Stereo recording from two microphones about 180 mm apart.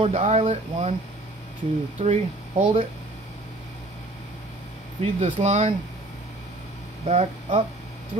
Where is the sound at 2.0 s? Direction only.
40° right (ahead or behind).